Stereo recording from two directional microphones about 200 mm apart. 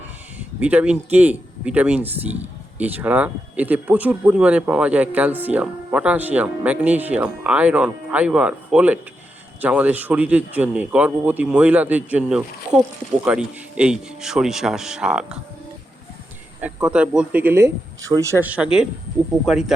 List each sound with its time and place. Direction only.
0.3 s speech: 5° right (ahead or behind)
16.6 s speech: 5° right (ahead or behind)